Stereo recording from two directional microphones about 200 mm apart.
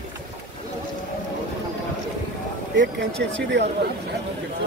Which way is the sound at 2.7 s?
65° right (ahead or behind).